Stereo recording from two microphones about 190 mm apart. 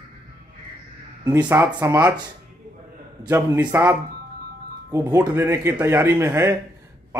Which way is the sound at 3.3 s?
10° right (ahead or behind).